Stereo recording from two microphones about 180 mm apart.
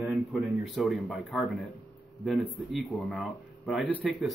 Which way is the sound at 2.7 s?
Centre (ahead or behind).